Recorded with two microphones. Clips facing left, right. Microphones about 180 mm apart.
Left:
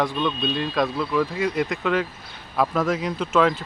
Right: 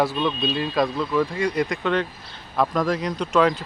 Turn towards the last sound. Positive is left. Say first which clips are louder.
# right 1 dB
turn(degrees=0)  # may be behind; listen again after turning